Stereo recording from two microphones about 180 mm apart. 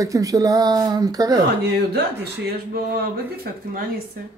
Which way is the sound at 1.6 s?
65° right (ahead or behind).